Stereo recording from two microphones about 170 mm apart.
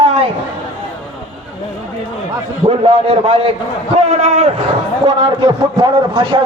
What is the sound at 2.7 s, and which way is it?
A man's voice, 35° right (ahead or behind).